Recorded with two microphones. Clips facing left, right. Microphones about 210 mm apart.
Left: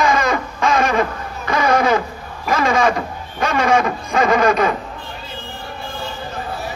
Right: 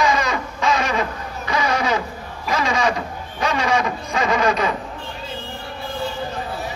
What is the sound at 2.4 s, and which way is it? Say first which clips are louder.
Vehicle: left 4 dB; 55° left (ahead or behind).